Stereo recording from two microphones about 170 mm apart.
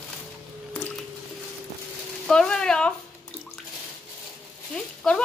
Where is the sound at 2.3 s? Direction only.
5° left (ahead or behind).